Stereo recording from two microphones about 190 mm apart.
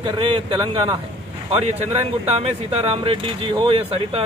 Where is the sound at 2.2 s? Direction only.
30° right (ahead or behind).